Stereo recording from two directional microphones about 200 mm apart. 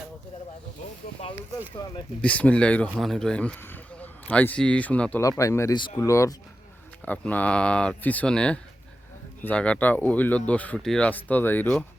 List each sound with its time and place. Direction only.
1.2 s speech: 30° left (ahead or behind)
2.2 s a man's voice: 5° left (ahead or behind)